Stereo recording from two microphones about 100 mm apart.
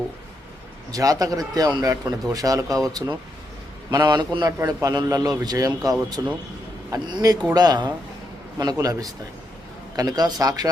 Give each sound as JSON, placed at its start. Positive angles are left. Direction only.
{"t": 0.9, "sound": "a man's voice", "side_deg": -35}
{"t": 4.6, "sound": "speech", "side_deg": -35}